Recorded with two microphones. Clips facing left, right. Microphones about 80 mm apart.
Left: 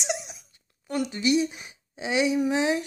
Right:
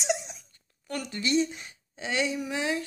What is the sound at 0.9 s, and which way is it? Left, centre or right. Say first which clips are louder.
Speech: left 5 dB; centre.